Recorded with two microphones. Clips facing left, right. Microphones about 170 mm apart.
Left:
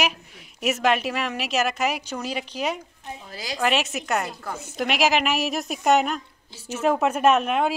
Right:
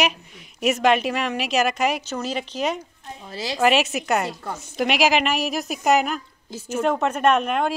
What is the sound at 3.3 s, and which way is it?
Speech, 25° right (ahead or behind).